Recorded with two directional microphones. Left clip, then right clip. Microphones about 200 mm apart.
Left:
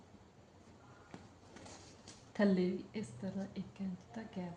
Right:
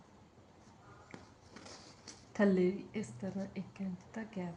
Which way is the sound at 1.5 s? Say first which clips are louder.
Right 2 dB; centre (ahead or behind).